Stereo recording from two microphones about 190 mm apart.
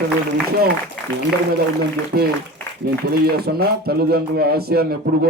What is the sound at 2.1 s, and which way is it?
A man's voice, 50° right (ahead or behind).